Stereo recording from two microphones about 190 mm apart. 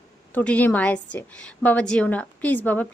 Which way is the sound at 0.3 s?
10° left (ahead or behind).